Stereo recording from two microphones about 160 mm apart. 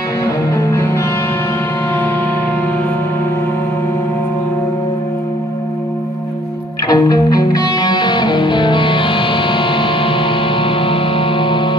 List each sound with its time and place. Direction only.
0.2 s music: 15° left (ahead or behind)
6.9 s music: 20° left (ahead or behind)